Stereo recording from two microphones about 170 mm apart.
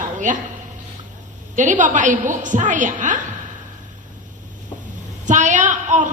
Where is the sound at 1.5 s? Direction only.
45° right (ahead or behind).